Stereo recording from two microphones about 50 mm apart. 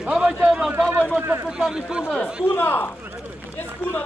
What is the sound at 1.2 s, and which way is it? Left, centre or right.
Speech, right.